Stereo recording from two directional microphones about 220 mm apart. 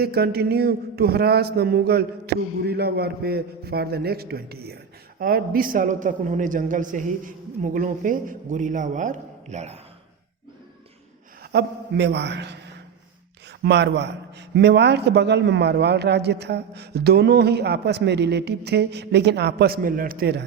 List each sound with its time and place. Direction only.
0.0 s a man's voice: 45° right (ahead or behind); by 9.8 s 30° right (ahead or behind)
11.5 s a man's voice: 50° right (ahead or behind)
13.6 s a man's voice: 50° right (ahead or behind)